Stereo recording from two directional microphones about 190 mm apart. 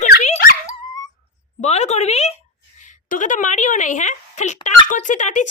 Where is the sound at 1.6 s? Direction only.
35° left (ahead or behind).